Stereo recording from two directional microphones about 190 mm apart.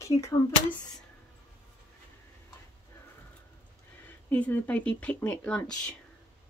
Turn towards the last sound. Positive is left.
turn(degrees=5)  # may be behind; listen again after turning